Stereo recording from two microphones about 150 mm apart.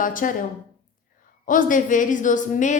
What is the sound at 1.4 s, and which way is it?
A woman's voice, 60° left (ahead or behind).